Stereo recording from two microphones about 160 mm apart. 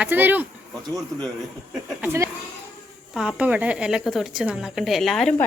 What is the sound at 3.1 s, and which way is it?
Speech, 5° right (ahead or behind).